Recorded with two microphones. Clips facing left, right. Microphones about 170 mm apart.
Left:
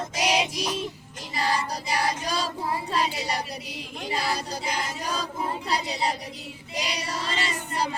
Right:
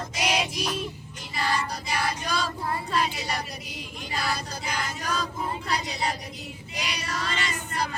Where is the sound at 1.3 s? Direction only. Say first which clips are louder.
Left 1 dB; 35° left (ahead or behind).